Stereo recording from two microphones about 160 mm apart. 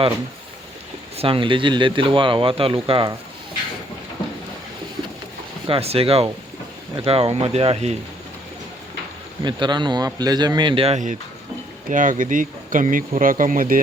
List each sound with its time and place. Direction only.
1.1 s speech: 35° right (ahead or behind)
5.6 s speech: 35° right (ahead or behind)
9.4 s speech: 30° right (ahead or behind); by 13.7 s 55° right (ahead or behind)